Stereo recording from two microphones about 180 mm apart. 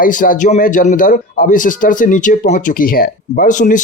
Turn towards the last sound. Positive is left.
turn(degrees=45)  # may be behind; listen again after turning